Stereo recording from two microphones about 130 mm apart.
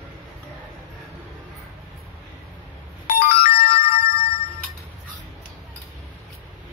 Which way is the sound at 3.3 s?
50° left (ahead or behind).